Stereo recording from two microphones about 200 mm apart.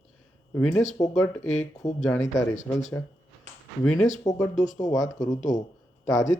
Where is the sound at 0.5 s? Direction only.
5° left (ahead or behind).